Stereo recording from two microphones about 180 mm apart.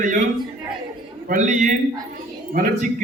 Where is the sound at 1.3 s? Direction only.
45° right (ahead or behind).